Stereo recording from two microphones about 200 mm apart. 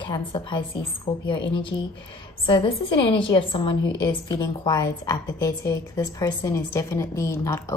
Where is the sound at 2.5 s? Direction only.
25° left (ahead or behind).